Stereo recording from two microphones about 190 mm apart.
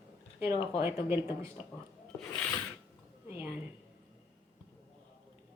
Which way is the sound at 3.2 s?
10° right (ahead or behind).